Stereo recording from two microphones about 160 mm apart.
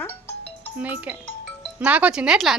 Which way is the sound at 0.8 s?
10° right (ahead or behind).